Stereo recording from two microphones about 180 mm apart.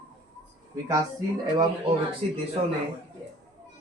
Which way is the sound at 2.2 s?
35° right (ahead or behind).